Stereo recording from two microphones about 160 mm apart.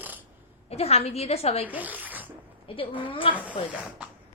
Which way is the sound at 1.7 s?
10° right (ahead or behind).